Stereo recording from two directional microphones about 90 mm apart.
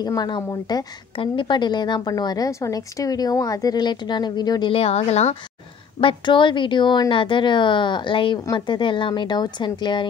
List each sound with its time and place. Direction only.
0.0 s a woman's voice: 50° left (ahead or behind)
1.1 s a woman's voice: 75° left (ahead or behind)
5.9 s a woman's voice: 70° left (ahead or behind)